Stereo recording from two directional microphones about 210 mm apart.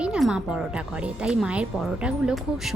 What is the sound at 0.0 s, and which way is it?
Speech, 5° right (ahead or behind).